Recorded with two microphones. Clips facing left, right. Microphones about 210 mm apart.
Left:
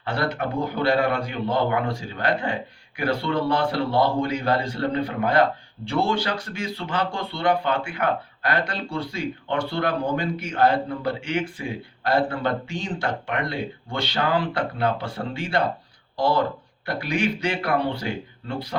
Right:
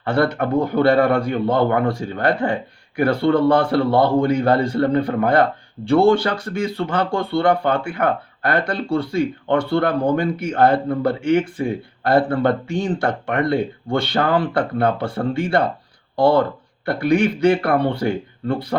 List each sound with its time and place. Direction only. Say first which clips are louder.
0.0 s a man's voice: right 7 dB; 55° right (ahead or behind)